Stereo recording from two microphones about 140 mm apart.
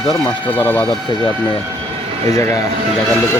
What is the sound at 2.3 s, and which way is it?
Speech, 20° left (ahead or behind).